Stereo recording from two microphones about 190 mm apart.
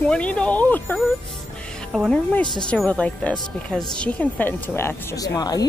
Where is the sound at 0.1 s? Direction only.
5° left (ahead or behind).